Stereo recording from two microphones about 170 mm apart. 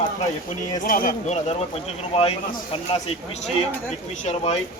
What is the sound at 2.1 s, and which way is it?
Speech, 35° left (ahead or behind).